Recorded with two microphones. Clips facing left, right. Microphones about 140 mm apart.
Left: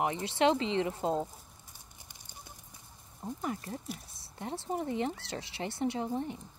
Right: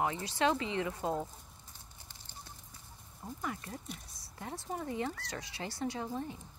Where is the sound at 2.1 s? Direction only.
15° left (ahead or behind).